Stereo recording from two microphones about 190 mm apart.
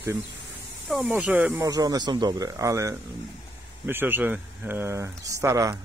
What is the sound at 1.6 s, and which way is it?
Speech, 20° right (ahead or behind).